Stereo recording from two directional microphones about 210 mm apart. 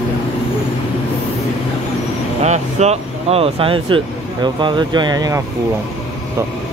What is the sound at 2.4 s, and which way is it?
Speech, 30° right (ahead or behind).